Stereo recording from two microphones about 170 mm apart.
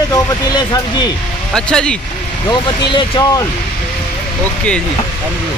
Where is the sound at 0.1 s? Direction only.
25° left (ahead or behind).